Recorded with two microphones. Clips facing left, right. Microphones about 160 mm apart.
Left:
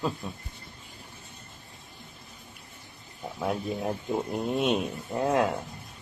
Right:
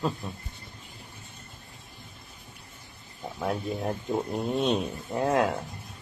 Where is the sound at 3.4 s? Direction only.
Centre (ahead or behind).